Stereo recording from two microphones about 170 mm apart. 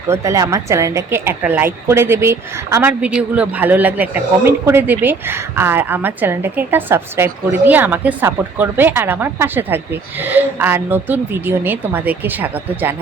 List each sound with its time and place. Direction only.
0.1 s a woman's voice: 20° right (ahead or behind)